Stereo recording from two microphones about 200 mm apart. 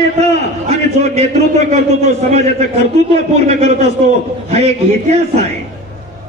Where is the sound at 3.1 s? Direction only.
30° right (ahead or behind).